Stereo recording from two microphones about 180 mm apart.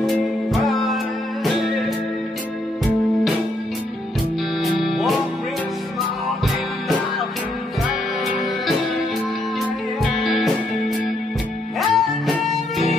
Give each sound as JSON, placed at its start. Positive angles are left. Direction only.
{"t": 0.0, "sound": "music", "side_deg": 0}
{"t": 4.8, "sound": "music", "side_deg": 0}
{"t": 10.2, "sound": "music", "side_deg": 0}
{"t": 11.8, "sound": "music", "side_deg": 0}